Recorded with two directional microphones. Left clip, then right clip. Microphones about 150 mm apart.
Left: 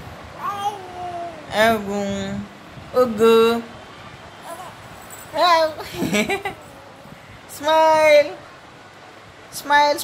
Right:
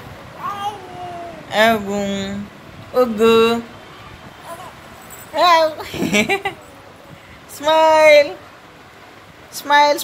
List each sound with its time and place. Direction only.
1.5 s a child's voice: centre (ahead or behind)
5.3 s a child's voice: 5° right (ahead or behind)
7.5 s speech: 5° right (ahead or behind)
9.6 s speech: 10° right (ahead or behind)